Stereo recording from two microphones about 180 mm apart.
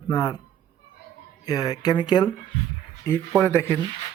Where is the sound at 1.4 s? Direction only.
20° left (ahead or behind).